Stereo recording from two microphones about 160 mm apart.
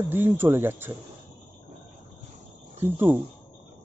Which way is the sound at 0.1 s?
15° right (ahead or behind).